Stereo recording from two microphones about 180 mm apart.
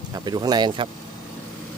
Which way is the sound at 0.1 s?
20° right (ahead or behind).